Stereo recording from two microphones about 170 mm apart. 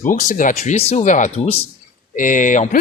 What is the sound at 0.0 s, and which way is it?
Speech, 50° left (ahead or behind).